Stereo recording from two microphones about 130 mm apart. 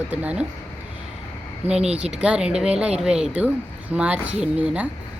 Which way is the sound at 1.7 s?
55° right (ahead or behind).